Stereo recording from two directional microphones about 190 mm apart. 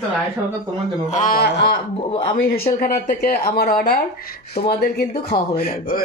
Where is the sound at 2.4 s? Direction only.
50° left (ahead or behind).